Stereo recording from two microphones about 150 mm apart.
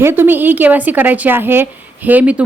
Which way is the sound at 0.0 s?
15° right (ahead or behind).